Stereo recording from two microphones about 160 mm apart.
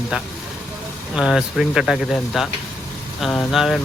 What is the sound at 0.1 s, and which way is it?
Speech, 5° right (ahead or behind).